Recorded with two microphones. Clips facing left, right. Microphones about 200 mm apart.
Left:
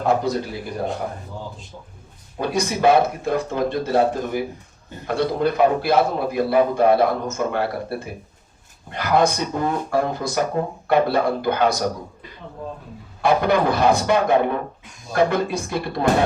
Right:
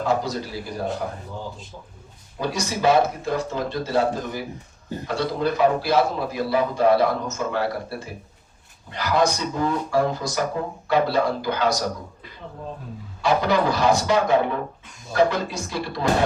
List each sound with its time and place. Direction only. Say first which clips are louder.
0.0 s a man's voice: left 3 dB; 55° left (ahead or behind)
2.4 s a man's voice: left 3 dB; 55° left (ahead or behind)
13.2 s a man's voice: left 2 dB; 55° left (ahead or behind)